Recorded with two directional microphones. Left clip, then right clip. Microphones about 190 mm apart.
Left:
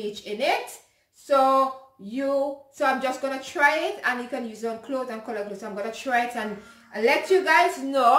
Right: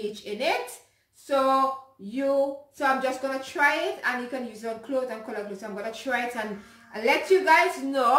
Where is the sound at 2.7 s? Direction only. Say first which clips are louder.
Left 1 dB; 15° left (ahead or behind).